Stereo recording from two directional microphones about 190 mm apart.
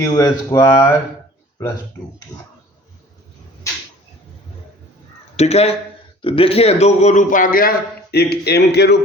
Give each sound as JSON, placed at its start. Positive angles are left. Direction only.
{"t": 0.0, "sound": "speech", "side_deg": 20}
{"t": 2.3, "sound": "speech", "side_deg": 20}
{"t": 5.4, "sound": "a man's voice", "side_deg": 35}